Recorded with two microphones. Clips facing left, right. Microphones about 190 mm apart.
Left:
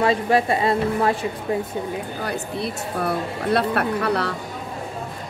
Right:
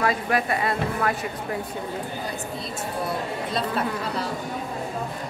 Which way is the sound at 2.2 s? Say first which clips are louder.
Left 5 dB; 65° left (ahead or behind).